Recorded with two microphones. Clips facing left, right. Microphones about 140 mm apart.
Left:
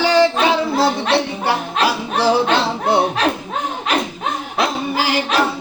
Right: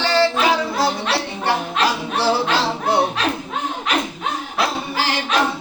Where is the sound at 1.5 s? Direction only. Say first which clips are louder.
Right 2 dB; 10° left (ahead or behind).